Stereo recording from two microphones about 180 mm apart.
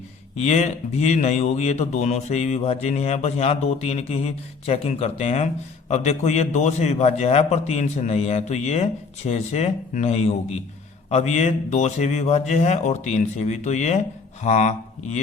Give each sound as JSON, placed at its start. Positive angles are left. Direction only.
{"t": 0.3, "sound": "speech", "side_deg": 40}